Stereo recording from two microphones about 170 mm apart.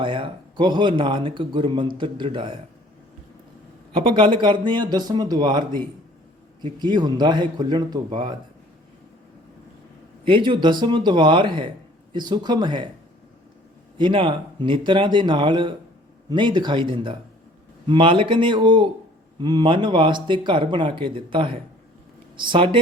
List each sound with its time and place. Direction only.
0.0 s speech: 30° right (ahead or behind)
3.9 s speech: 30° right (ahead or behind)
10.2 s speech: 30° right (ahead or behind)
14.0 s speech: 30° right (ahead or behind)